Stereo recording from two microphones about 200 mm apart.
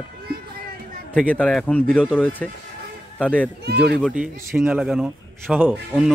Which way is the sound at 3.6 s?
55° right (ahead or behind).